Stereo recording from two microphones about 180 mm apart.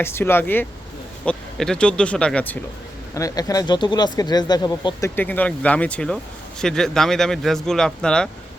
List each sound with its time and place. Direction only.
0.0 s speech: 15° left (ahead or behind)
3.2 s speech: 20° left (ahead or behind)